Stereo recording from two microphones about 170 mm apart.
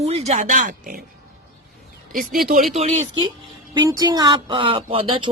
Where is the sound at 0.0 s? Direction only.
40° right (ahead or behind); by 1.0 s 55° right (ahead or behind).